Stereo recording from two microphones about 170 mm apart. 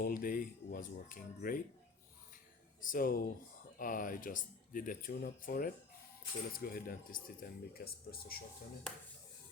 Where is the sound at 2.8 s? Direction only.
55° left (ahead or behind).